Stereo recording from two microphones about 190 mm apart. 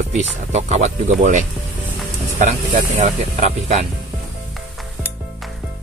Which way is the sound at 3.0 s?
35° right (ahead or behind).